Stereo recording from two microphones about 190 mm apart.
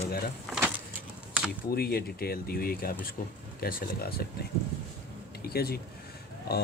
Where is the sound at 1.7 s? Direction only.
55° left (ahead or behind).